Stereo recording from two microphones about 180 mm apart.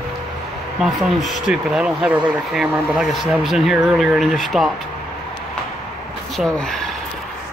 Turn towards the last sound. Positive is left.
turn(degrees=0)  # may be behind; listen again after turning